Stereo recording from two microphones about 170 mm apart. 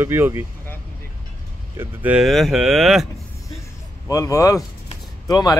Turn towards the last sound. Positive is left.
turn(degrees=25)  # may be behind; listen again after turning